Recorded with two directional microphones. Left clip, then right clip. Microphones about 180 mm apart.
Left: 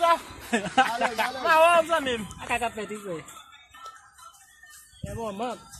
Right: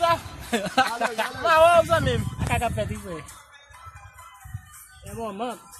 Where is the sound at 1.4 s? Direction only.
5° right (ahead or behind).